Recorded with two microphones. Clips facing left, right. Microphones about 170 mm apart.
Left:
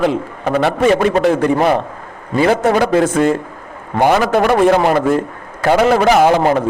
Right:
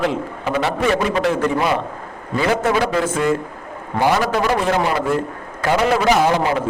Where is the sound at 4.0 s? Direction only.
55° left (ahead or behind).